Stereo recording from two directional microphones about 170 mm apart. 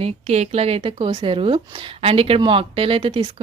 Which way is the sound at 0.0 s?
40° right (ahead or behind).